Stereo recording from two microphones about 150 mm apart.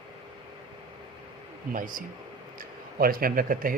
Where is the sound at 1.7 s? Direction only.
65° right (ahead or behind).